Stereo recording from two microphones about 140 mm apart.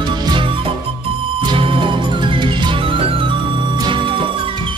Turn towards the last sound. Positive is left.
turn(degrees=-40)  # may be behind; listen again after turning